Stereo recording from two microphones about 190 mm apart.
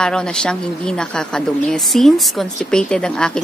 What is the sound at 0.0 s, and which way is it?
A woman's voice, 5° left (ahead or behind).